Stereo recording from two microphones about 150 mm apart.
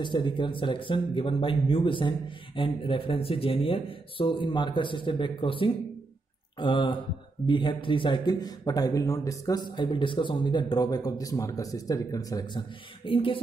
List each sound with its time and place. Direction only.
0.0 s a man's voice: 30° left (ahead or behind)